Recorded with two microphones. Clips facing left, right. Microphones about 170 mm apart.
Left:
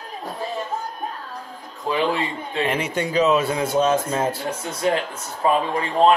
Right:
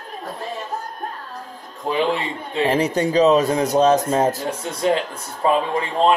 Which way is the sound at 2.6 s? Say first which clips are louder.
Right 6 dB; 35° right (ahead or behind).